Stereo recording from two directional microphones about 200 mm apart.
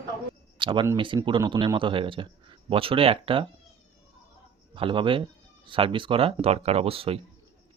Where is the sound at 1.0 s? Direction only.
25° right (ahead or behind).